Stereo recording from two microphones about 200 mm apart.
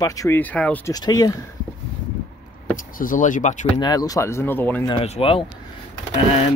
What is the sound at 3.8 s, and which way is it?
Speech, 20° left (ahead or behind).